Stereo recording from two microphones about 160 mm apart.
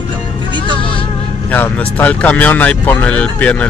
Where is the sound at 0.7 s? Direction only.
30° left (ahead or behind).